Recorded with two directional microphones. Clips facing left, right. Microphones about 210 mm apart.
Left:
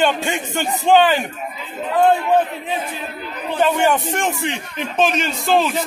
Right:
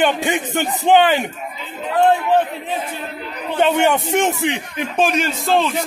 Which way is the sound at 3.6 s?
25° right (ahead or behind).